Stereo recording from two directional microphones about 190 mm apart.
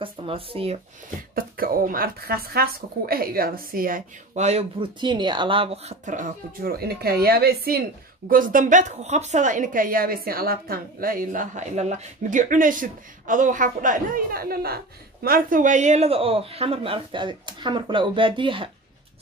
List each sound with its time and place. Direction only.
0.0 s speech: 30° right (ahead or behind)
1.3 s speech: 50° right (ahead or behind); by 18.7 s 25° right (ahead or behind)